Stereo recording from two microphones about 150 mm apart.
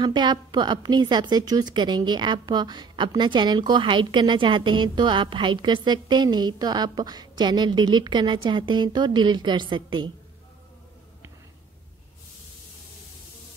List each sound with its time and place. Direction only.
0.0 s a woman's voice: 30° right (ahead or behind)